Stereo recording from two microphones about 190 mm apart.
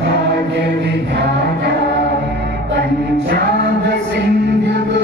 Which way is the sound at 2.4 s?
65° right (ahead or behind).